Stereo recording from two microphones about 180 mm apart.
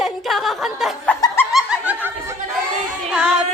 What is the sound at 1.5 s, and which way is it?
Snicker, 5° right (ahead or behind).